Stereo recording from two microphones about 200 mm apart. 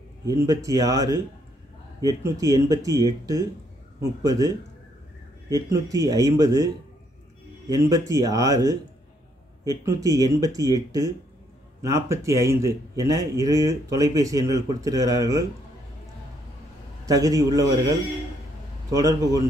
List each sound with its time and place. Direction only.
0.2 s a man's voice: 15° right (ahead or behind)
5.5 s a man's voice: 15° right (ahead or behind)
7.9 s a man's voice: 15° right (ahead or behind)
17.0 s a man's voice: 15° right (ahead or behind)